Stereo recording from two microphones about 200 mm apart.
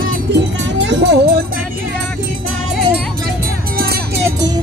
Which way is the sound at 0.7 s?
60° right (ahead or behind).